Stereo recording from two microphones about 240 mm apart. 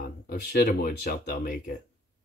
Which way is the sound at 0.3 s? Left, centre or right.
Left.